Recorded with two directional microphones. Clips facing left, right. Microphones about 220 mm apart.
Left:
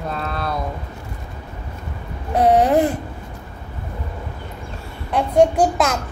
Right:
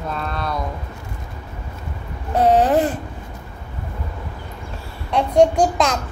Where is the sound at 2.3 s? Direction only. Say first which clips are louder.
Left 1 dB; 10° left (ahead or behind).